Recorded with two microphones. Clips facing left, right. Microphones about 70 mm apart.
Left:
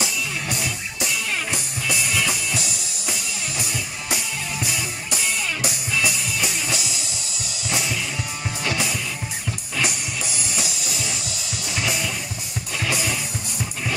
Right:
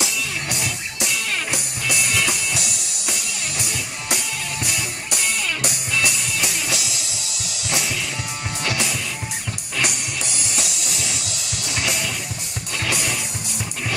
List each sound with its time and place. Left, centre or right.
0.0 s music: centre
2.7 s music: right
3.1 s music: centre
7.1 s music: right
7.6 s music: centre